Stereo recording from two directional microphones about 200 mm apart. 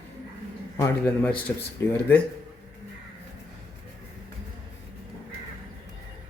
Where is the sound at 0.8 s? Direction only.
10° left (ahead or behind).